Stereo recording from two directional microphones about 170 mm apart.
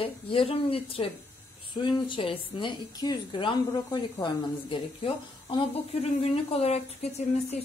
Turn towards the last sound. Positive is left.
turn(degrees=40)  # may be behind; listen again after turning